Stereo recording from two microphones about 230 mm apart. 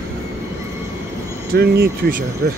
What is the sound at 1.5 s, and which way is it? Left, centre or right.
Speech, right.